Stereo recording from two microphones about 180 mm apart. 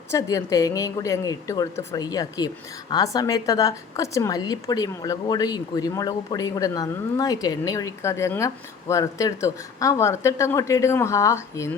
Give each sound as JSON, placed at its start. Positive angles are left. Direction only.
{"t": 0.1, "sound": "a woman's voice", "side_deg": 20}